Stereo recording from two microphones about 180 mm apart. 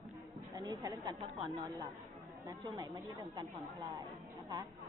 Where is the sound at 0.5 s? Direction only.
20° right (ahead or behind).